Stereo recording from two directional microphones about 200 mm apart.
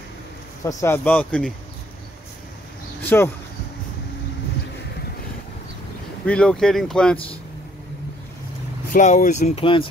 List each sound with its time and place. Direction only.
0.7 s speech: 15° left (ahead or behind)
3.0 s speech: 10° left (ahead or behind)
6.2 s speech: 5° left (ahead or behind)
8.9 s speech: 40° left (ahead or behind)